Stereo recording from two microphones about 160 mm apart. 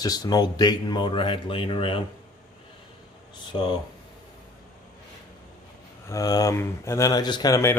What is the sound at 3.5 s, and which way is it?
Speech, 30° left (ahead or behind).